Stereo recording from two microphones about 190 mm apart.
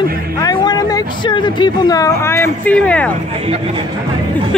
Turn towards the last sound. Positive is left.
turn(degrees=5)  # may be behind; listen again after turning